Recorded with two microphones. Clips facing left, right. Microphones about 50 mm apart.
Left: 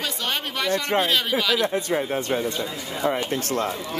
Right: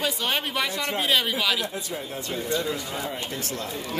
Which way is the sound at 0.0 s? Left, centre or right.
Centre.